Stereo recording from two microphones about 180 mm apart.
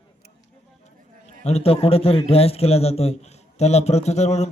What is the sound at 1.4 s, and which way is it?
A man's voice, 35° left (ahead or behind).